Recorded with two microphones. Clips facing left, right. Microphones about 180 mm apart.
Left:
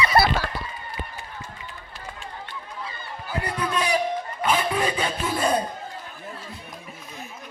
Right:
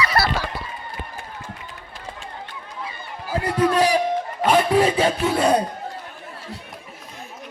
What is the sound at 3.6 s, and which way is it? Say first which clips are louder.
Speech: right 10 dB; 40° right (ahead or behind).